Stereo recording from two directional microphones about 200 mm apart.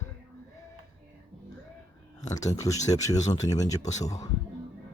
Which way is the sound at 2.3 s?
15° left (ahead or behind).